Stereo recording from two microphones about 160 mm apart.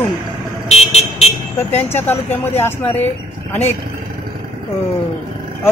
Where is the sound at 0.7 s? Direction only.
45° left (ahead or behind).